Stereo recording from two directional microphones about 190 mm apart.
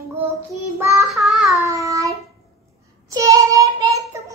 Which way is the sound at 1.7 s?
15° right (ahead or behind).